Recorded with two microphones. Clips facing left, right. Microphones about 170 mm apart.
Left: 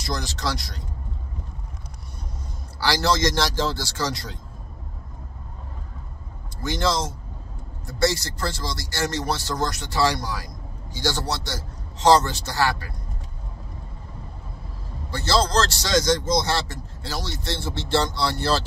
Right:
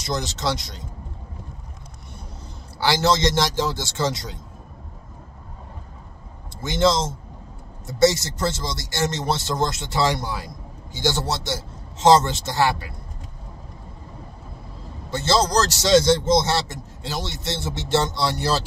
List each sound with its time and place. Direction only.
0.0 s speech: 20° right (ahead or behind)
2.8 s speech: 20° right (ahead or behind)
6.6 s speech: 20° right (ahead or behind)
15.0 s speech: 20° right (ahead or behind)